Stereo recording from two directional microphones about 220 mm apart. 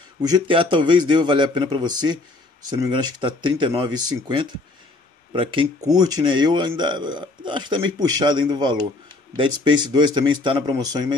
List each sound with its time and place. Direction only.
0.2 s a man's voice: 20° right (ahead or behind)